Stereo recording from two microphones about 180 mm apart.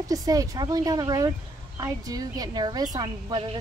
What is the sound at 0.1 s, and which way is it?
Speech, 20° right (ahead or behind).